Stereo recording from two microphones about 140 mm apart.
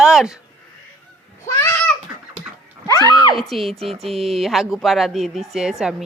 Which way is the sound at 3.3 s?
Centre (ahead or behind).